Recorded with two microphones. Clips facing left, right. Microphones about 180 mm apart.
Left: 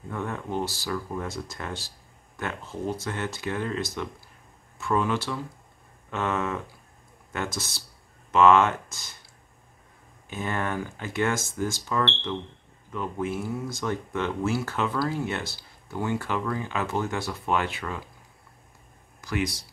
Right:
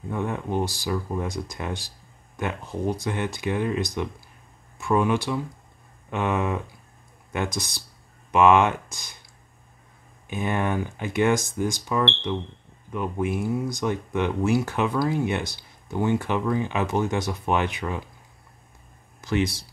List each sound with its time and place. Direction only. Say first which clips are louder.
0.1 s speech: right 4 dB; 15° right (ahead or behind)
10.2 s speech: right 4 dB; 15° right (ahead or behind)
19.2 s speech: right 4 dB; 25° right (ahead or behind)